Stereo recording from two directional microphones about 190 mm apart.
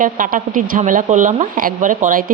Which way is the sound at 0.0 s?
45° right (ahead or behind).